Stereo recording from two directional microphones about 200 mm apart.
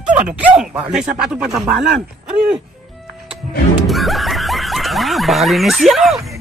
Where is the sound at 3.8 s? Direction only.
Centre (ahead or behind).